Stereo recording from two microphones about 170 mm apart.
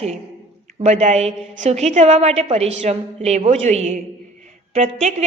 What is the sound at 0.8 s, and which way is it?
A woman's voice, 45° right (ahead or behind).